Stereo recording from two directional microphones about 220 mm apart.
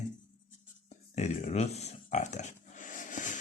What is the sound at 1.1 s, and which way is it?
Speech, 30° left (ahead or behind).